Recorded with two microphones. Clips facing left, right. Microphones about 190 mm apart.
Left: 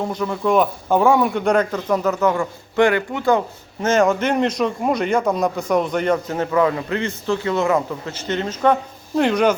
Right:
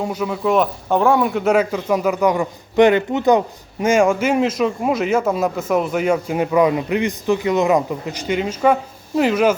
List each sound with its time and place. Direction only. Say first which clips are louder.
0.0 s speech: right 1 dB; 10° right (ahead or behind)